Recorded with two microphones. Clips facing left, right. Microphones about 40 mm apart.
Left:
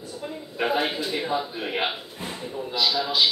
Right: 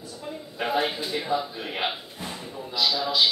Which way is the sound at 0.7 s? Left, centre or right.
Left.